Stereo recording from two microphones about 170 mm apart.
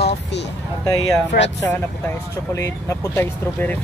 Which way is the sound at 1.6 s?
15° left (ahead or behind).